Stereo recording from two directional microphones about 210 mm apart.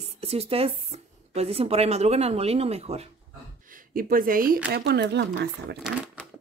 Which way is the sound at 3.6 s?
40° right (ahead or behind).